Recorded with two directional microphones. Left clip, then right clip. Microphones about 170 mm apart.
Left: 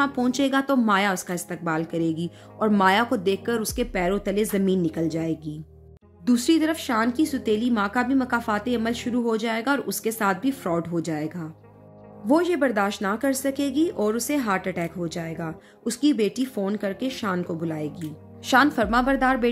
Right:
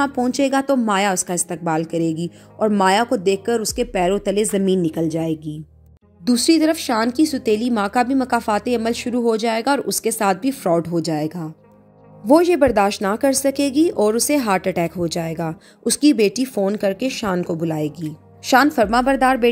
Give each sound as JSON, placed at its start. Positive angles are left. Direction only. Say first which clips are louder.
{"t": 0.0, "sound": "a woman's voice", "louder": "right 4 dB", "side_deg": -25}
{"t": 6.2, "sound": "speech", "louder": "right 5 dB", "side_deg": -40}